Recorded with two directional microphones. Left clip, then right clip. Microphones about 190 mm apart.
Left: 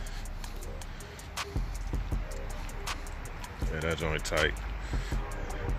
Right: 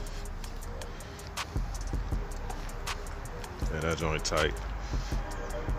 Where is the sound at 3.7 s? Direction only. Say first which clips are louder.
Right 1 dB; 5° right (ahead or behind).